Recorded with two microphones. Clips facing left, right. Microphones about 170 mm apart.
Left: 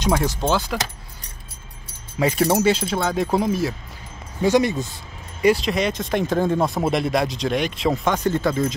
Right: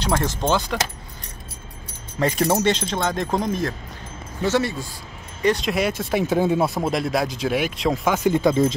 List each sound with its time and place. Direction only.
0.1 s speech: 10° left (ahead or behind)
2.1 s speech: 10° left (ahead or behind)
4.4 s speech: 15° left (ahead or behind)
5.4 s speech: 5° left (ahead or behind); by 8.6 s 15° right (ahead or behind)